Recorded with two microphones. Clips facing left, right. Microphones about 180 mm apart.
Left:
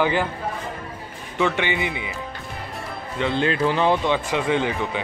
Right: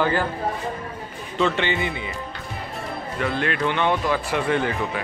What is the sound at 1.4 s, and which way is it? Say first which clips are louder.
Speech: even; 15° left (ahead or behind).